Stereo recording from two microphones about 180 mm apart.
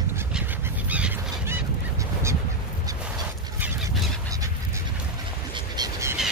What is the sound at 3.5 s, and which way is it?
Fowl, 10° right (ahead or behind).